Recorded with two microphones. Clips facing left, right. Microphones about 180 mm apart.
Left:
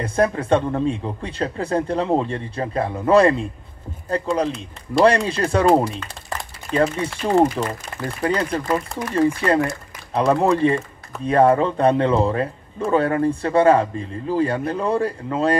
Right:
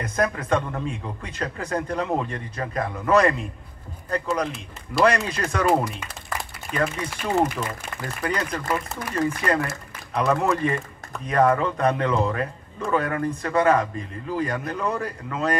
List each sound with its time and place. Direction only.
0.0 s speech: 30° left (ahead or behind)
5.0 s speech: 30° left (ahead or behind)